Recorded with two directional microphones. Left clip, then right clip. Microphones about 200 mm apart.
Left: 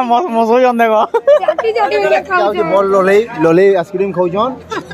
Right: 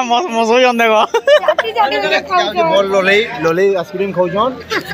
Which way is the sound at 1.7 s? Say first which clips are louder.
Left 2 dB; 45° left (ahead or behind).